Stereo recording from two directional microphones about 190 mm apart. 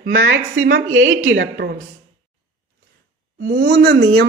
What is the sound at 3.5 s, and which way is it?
Speech, 55° right (ahead or behind).